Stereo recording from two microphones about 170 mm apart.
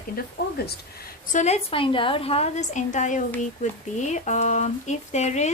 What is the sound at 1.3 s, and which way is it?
Speech, 40° left (ahead or behind).